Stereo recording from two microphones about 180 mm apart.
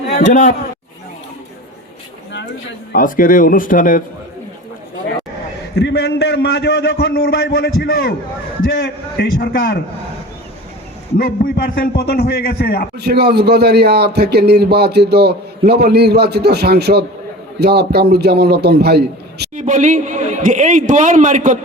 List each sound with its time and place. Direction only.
0.2 s a man's voice: 40° left (ahead or behind)
2.9 s speech: 50° left (ahead or behind)
5.7 s a man's voice: 70° left (ahead or behind)
8.7 s a man's voice: 90° left
9.4 s a man's voice: 55° left (ahead or behind)
11.2 s a man's voice: 55° left (ahead or behind)
13.1 s a man's voice: 65° right (ahead or behind)
19.5 s a man's voice: 45° right (ahead or behind)